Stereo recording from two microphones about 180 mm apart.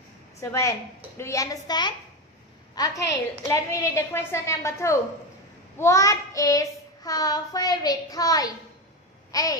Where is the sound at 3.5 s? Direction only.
15° left (ahead or behind).